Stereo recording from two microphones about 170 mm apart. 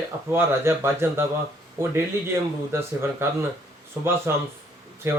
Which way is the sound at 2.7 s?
15° right (ahead or behind).